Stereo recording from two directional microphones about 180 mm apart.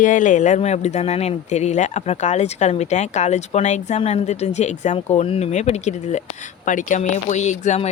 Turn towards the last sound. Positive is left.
turn(degrees=40)  # may be behind; listen again after turning